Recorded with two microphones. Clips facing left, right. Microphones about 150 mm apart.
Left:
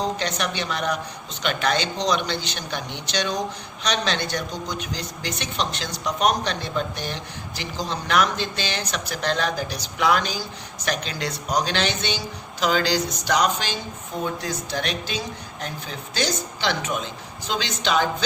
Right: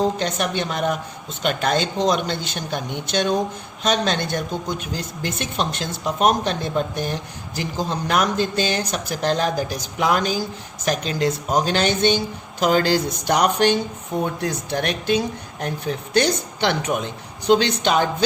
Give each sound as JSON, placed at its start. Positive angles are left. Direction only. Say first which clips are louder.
{"t": 0.2, "sound": "a woman's voice", "louder": "right 4 dB", "side_deg": -45}